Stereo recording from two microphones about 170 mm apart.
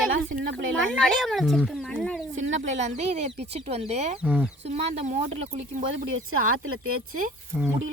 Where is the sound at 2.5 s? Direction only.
45° right (ahead or behind).